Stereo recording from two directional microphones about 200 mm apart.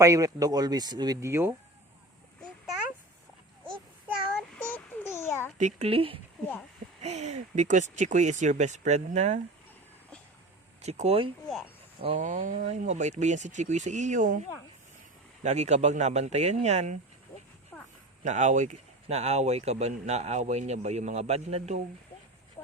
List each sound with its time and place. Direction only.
0.0 s speech: 15° right (ahead or behind)
4.4 s a sound: 5° left (ahead or behind)
5.5 s a woman's voice: 35° right (ahead or behind)
10.8 s speech: 30° right (ahead or behind)
15.4 s speech: 35° right (ahead or behind)
17.7 s a sound: 5° left (ahead or behind)
18.2 s speech: 35° right (ahead or behind)